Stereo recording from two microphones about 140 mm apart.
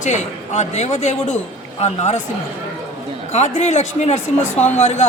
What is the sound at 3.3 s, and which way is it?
Speech, 55° left (ahead or behind).